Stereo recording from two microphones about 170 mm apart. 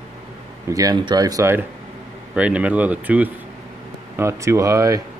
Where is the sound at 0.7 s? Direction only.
20° right (ahead or behind).